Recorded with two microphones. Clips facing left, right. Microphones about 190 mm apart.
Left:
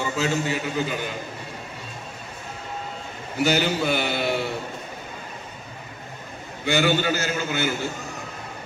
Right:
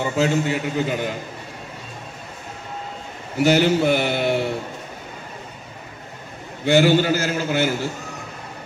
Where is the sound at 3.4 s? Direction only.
25° right (ahead or behind).